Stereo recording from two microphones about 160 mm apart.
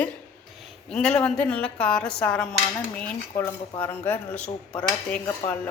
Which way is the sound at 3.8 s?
10° left (ahead or behind).